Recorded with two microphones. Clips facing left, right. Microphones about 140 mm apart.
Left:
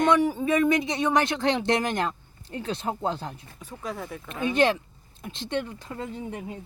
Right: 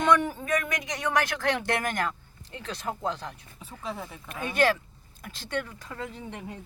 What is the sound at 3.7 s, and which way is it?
Speech, 5° right (ahead or behind).